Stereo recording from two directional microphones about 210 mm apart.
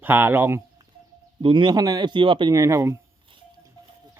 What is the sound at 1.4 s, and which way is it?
Speech, 25° right (ahead or behind).